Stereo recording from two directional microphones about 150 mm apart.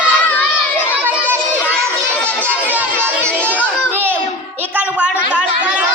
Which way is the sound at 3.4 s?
10° left (ahead or behind).